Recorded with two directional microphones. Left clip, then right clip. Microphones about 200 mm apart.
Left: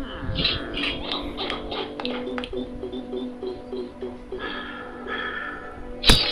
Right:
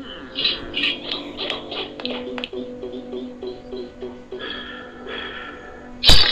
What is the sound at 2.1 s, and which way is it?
Music, 5° right (ahead or behind).